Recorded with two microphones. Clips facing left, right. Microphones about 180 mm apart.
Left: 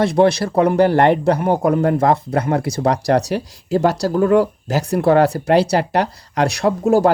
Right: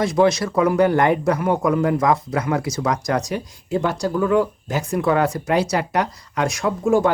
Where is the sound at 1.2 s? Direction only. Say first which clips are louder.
Left 3 dB; 30° left (ahead or behind).